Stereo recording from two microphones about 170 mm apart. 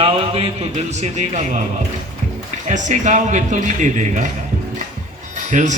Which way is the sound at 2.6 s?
45° right (ahead or behind).